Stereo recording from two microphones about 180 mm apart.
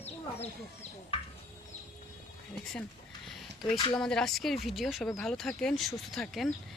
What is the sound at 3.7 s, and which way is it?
Speech, 25° left (ahead or behind).